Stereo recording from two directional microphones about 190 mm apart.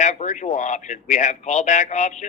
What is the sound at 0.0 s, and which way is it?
Speech, 40° left (ahead or behind).